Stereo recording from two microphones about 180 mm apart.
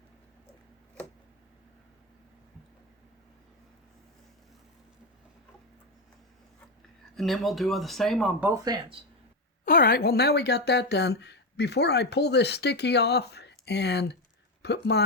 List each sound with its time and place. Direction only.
7.2 s speech: centre (ahead or behind)
8.4 s speech: 20° right (ahead or behind)
9.6 s speech: 55° left (ahead or behind)